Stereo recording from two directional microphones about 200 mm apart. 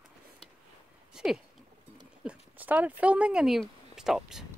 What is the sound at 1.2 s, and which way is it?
Speech, 5° right (ahead or behind).